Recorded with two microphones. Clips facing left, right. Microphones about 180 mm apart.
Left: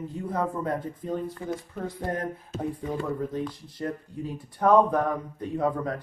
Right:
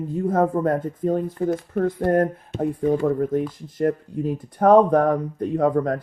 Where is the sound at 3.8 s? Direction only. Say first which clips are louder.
Right 10 dB; 50° right (ahead or behind).